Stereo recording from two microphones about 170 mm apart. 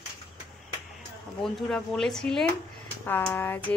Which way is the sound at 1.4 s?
Centre (ahead or behind).